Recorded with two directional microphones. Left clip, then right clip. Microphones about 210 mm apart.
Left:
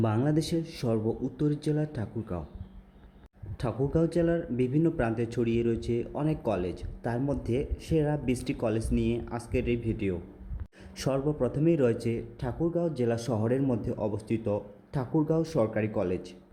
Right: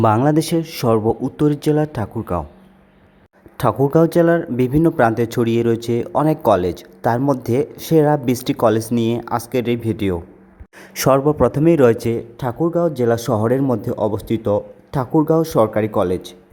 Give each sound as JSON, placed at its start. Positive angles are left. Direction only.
{"t": 0.3, "sound": "speech", "side_deg": -20}
{"t": 3.6, "sound": "speech", "side_deg": -20}